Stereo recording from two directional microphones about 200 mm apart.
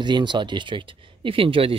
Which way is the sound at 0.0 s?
20° right (ahead or behind).